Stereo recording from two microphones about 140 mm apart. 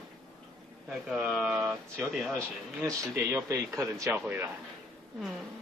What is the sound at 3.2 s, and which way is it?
A man's voice, 15° right (ahead or behind).